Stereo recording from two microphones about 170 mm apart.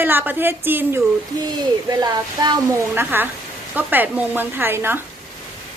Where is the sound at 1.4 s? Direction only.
25° right (ahead or behind).